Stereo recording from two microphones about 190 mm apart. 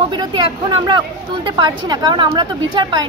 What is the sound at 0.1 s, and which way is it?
Speech, 25° right (ahead or behind).